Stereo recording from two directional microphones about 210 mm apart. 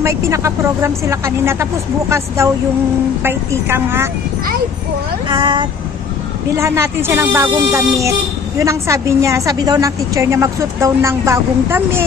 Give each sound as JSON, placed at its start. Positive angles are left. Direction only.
{"t": 0.0, "sound": "speech", "side_deg": -15}
{"t": 5.3, "sound": "speech", "side_deg": -20}